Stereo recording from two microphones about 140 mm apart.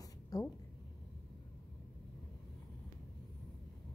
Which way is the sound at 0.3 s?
25° left (ahead or behind).